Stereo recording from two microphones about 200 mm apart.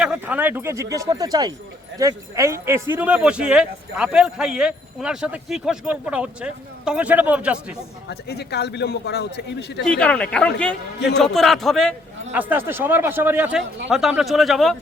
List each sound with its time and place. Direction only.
0.0 s speech: 5° right (ahead or behind)
8.1 s a man's voice: 55° left (ahead or behind)
9.8 s speech: 5° left (ahead or behind)
12.3 s speech: 10° right (ahead or behind)